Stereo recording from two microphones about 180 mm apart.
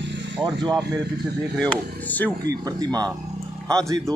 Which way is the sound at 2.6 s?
20° right (ahead or behind).